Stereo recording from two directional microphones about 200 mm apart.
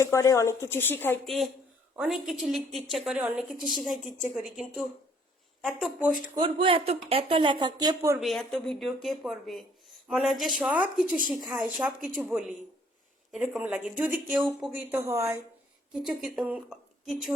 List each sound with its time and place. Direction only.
0.0 s a woman's voice: 15° left (ahead or behind); by 6.1 s centre (ahead or behind)
6.3 s speech: 25° right (ahead or behind)
8.2 s a woman's voice: centre (ahead or behind)
14.8 s a woman's voice: 10° right (ahead or behind)
16.0 s a woman's voice: centre (ahead or behind)